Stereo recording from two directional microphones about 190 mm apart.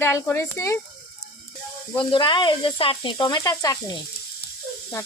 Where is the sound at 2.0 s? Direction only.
25° left (ahead or behind).